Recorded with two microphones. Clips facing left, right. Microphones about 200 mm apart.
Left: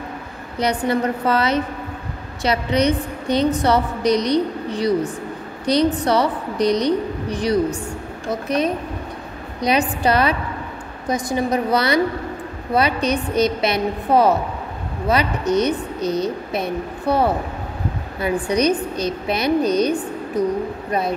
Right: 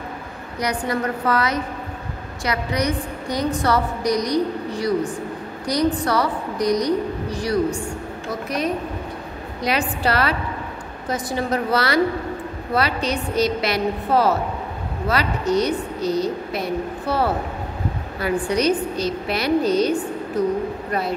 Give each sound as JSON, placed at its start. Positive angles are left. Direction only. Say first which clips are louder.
{"t": 0.6, "sound": "a woman's voice", "louder": "left 4 dB", "side_deg": 25}
{"t": 9.6, "sound": "a woman's voice", "louder": "left 4 dB", "side_deg": 20}